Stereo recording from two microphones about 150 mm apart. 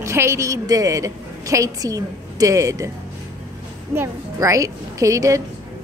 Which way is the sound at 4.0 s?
20° right (ahead or behind).